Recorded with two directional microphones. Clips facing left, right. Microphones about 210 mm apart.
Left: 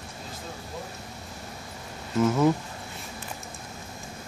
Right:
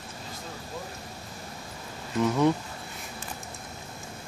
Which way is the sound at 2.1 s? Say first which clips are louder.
Left 2 dB; 5° left (ahead or behind).